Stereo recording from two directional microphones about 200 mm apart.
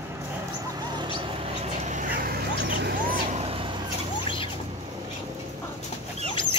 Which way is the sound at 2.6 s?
55° right (ahead or behind).